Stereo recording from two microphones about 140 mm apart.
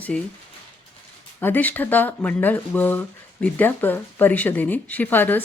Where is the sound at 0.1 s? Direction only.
5° left (ahead or behind).